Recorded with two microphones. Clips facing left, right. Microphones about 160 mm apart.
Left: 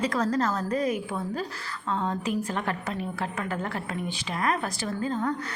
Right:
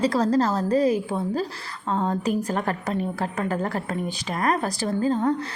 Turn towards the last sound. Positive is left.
turn(degrees=-35)  # may be behind; listen again after turning